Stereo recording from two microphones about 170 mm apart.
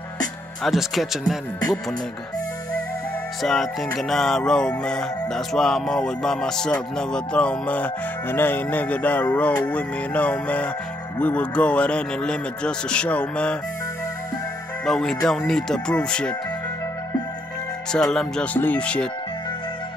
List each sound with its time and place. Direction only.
0.7 s music: centre (ahead or behind)
1.6 s music: 20° left (ahead or behind)
3.4 s music: centre (ahead or behind)
9.7 s speech: 10° left (ahead or behind)
14.9 s music: 5° left (ahead or behind)
17.9 s speech: 5° left (ahead or behind)